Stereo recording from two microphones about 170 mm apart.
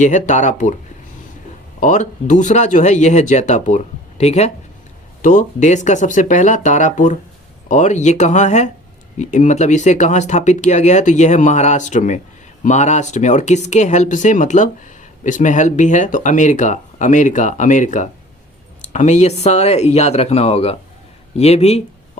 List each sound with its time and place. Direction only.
0.0 s speech: 45° left (ahead or behind)
1.8 s speech: 45° left (ahead or behind)